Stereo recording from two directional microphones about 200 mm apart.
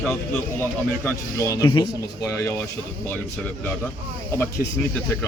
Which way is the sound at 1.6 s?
25° left (ahead or behind).